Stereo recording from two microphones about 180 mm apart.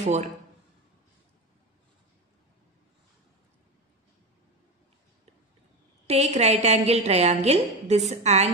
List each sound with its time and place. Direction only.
0.0 s a man's voice: 40° right (ahead or behind)
6.0 s a woman's voice: 35° right (ahead or behind)